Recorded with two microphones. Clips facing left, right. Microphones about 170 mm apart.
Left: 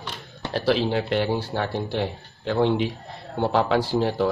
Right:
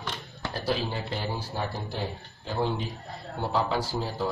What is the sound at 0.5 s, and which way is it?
Speech, 80° left.